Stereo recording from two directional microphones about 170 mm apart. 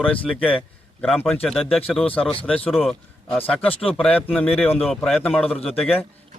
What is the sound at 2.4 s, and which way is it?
Speech, 5° left (ahead or behind).